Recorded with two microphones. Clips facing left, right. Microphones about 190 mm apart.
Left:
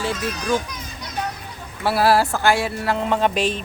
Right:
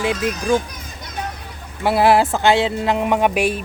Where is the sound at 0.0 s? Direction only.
15° right (ahead or behind).